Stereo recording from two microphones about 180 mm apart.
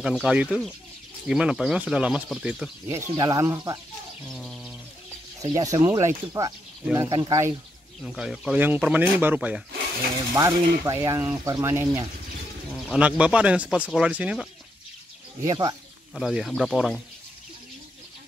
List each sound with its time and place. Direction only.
0.0 s speech: 5° right (ahead or behind)
3.2 s speech: 20° right (ahead or behind)
4.2 s bird: centre (ahead or behind)
5.4 s speech: 20° right (ahead or behind)
8.0 s speech: centre (ahead or behind)
15.4 s speech: 20° right (ahead or behind)
16.2 s speech: centre (ahead or behind)